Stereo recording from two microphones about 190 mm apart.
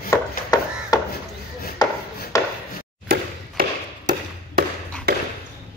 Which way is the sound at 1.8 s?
20° left (ahead or behind).